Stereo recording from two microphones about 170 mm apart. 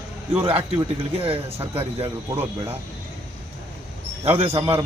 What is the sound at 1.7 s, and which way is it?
Speech, 30° right (ahead or behind).